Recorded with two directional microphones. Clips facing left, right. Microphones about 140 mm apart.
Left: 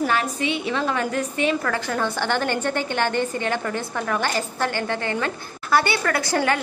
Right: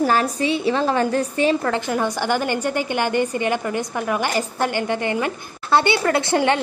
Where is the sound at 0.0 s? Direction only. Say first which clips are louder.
Right 4 dB; 35° right (ahead or behind).